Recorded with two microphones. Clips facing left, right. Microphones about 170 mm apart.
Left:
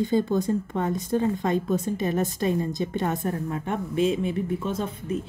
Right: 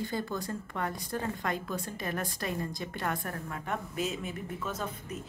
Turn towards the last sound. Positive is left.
turn(degrees=25)  # may be behind; listen again after turning